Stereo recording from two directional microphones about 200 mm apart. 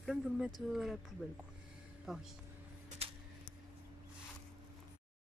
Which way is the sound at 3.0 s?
30° right (ahead or behind).